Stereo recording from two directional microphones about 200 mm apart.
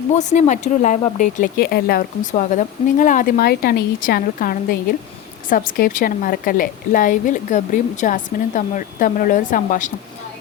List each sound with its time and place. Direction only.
0.2 s speech: 35° left (ahead or behind)
2.3 s speech: 40° left (ahead or behind)